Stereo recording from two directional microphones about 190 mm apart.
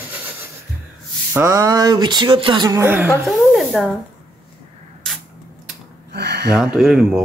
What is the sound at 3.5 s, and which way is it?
Speech, centre (ahead or behind).